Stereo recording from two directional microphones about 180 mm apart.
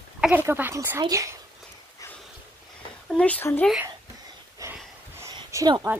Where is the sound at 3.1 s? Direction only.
10° left (ahead or behind).